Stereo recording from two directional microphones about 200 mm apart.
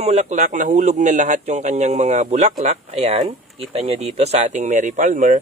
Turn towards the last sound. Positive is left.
turn(degrees=-40)  # may be behind; listen again after turning